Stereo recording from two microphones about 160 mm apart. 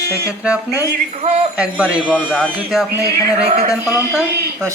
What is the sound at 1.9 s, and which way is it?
Speech, 10° right (ahead or behind).